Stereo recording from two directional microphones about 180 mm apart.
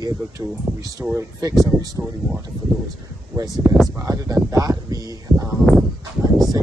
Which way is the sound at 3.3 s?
20° right (ahead or behind).